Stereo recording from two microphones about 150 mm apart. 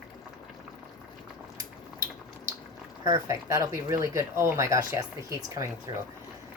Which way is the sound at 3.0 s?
20° right (ahead or behind).